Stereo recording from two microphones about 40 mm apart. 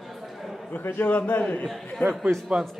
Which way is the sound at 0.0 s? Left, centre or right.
Centre.